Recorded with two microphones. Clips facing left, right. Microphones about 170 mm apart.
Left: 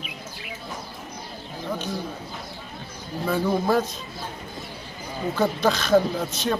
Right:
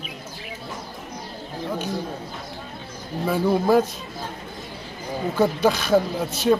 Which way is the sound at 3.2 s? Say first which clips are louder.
Right 3 dB; 10° right (ahead or behind).